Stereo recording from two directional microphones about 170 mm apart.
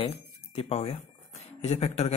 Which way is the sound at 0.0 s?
35° left (ahead or behind).